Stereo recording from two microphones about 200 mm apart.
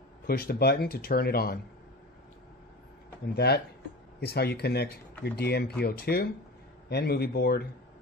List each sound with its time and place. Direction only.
0.3 s speech: 50° left (ahead or behind)
3.3 s speech: 55° left (ahead or behind)